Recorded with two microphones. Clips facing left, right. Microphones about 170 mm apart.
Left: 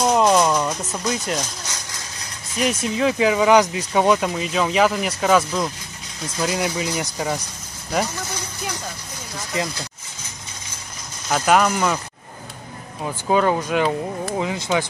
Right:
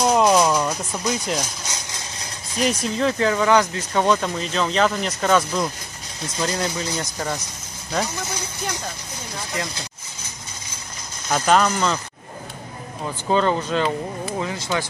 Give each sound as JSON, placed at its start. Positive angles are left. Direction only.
{"t": 0.0, "sound": "music", "side_deg": 0}
{"t": 2.6, "sound": "speech", "side_deg": 5}
{"t": 11.2, "sound": "speech", "side_deg": 5}
{"t": 13.0, "sound": "speech", "side_deg": 10}